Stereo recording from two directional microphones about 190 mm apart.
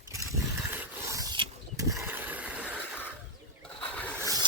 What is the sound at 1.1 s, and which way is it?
Pulleys, 20° right (ahead or behind).